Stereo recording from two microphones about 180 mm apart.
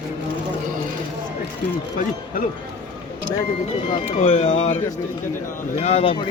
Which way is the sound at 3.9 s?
40° left (ahead or behind).